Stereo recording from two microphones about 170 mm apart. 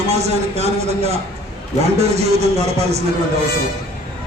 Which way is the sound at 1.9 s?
40° right (ahead or behind).